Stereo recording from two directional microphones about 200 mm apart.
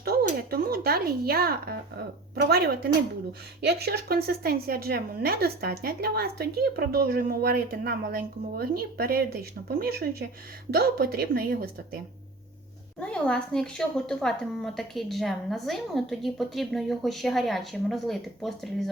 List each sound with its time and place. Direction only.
0.0 s a sound: 50° right (ahead or behind)
0.3 s a woman's voice: 50° right (ahead or behind)
13.0 s a woman's voice: 5° left (ahead or behind)